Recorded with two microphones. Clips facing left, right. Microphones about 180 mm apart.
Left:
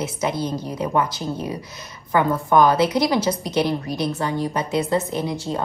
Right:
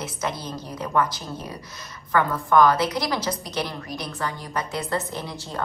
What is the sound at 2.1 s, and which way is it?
A woman's voice, 20° left (ahead or behind).